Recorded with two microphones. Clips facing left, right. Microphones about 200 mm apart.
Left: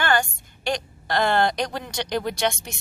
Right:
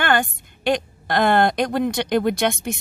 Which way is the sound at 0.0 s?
55° right (ahead or behind).